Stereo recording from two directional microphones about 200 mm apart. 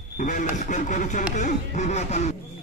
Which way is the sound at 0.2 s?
40° left (ahead or behind).